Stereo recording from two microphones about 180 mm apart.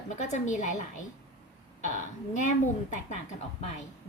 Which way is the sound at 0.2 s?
40° left (ahead or behind).